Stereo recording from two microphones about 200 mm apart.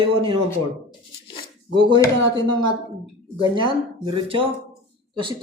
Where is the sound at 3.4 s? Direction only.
25° right (ahead or behind).